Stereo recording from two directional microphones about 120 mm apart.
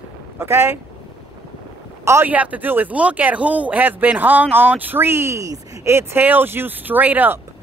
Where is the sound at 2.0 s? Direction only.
20° right (ahead or behind).